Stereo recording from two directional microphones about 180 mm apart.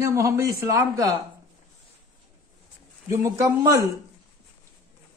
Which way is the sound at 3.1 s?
15° right (ahead or behind).